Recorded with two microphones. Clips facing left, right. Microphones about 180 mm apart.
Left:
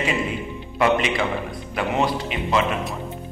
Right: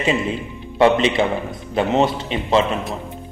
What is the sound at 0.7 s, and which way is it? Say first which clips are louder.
A man's voice: right 5 dB; 30° right (ahead or behind).